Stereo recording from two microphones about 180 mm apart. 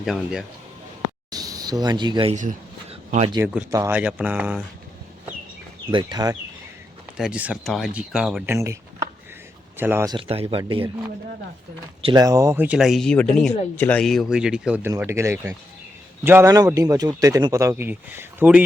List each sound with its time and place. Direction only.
0.0 s speech: centre (ahead or behind)
1.3 s speech: 20° right (ahead or behind)
2.3 s a sound: 45° right (ahead or behind)
3.3 s a man's voice: 15° right (ahead or behind)
5.9 s speech: 25° right (ahead or behind)
7.2 s speech: 5° right (ahead or behind)
8.5 s a sound: 15° right (ahead or behind)
9.7 s a man's voice: 10° right (ahead or behind)
10.2 s speech: 30° right (ahead or behind)
12.0 s a man's voice: 20° right (ahead or behind)